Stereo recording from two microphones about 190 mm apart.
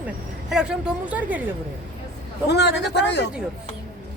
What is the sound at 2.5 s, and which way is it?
Speech, 60° left (ahead or behind).